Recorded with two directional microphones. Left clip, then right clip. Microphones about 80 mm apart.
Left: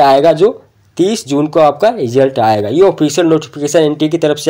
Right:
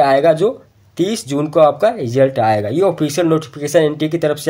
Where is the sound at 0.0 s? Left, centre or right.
Left.